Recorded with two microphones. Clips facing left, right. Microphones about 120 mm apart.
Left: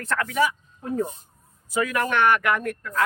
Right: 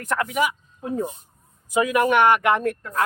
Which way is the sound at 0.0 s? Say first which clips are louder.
Right 1 dB; 15° right (ahead or behind).